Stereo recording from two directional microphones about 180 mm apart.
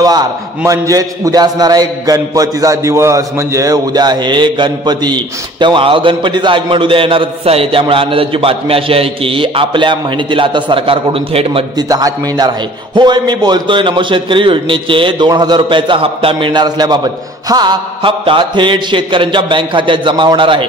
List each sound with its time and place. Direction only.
0.0 s a man's voice: 20° right (ahead or behind)